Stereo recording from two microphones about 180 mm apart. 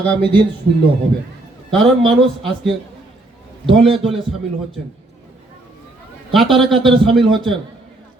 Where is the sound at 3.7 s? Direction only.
30° right (ahead or behind).